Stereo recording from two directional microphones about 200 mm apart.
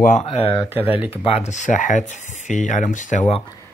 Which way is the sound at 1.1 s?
30° left (ahead or behind).